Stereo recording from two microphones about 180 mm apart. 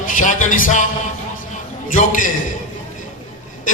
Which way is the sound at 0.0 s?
45° left (ahead or behind).